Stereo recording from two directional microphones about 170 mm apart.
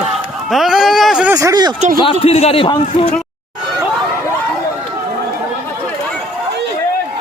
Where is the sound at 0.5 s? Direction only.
Centre (ahead or behind).